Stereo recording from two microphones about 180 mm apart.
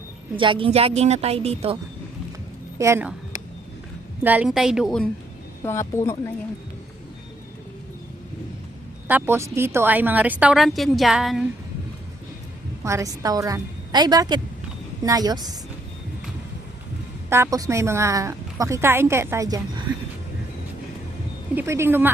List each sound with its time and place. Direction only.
0.3 s a woman's voice: 30° right (ahead or behind)
2.7 s a woman's voice: 15° right (ahead or behind)
4.2 s a woman's voice: 10° right (ahead or behind)
5.6 s speech: 15° left (ahead or behind)
9.0 s a woman's voice: 10° right (ahead or behind)
12.8 s a woman's voice: 15° right (ahead or behind)
17.2 s a woman's voice: 15° right (ahead or behind)
21.5 s a woman's voice: 10° right (ahead or behind)